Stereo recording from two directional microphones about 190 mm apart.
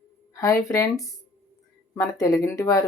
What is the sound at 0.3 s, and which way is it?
Speech, 15° left (ahead or behind).